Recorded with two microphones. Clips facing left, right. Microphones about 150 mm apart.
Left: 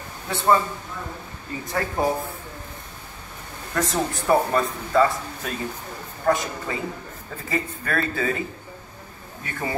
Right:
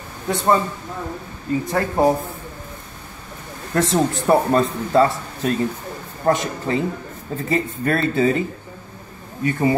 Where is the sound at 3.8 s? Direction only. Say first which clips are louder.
Right 6 dB; 25° right (ahead or behind).